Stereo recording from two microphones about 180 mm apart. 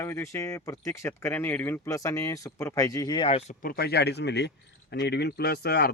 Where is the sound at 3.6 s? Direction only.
55° left (ahead or behind).